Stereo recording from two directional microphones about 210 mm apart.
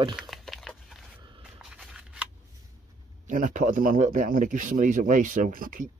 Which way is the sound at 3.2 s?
40° right (ahead or behind).